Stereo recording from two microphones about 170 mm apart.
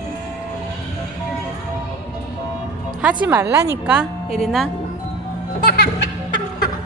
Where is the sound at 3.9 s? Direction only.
Centre (ahead or behind).